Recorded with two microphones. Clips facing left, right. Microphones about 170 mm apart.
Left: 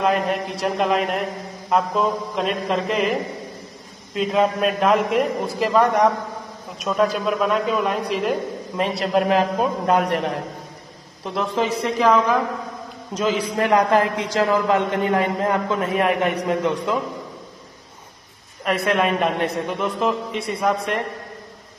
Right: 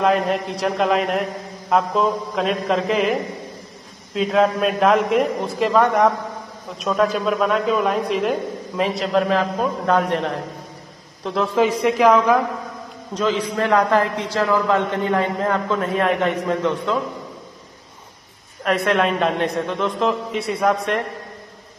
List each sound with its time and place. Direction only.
0.0 s a man's voice: centre (ahead or behind)
9.1 s a man's voice: 20° left (ahead or behind)
11.5 s a man's voice: 10° right (ahead or behind)
13.1 s a man's voice: 15° left (ahead or behind)
18.6 s a man's voice: centre (ahead or behind)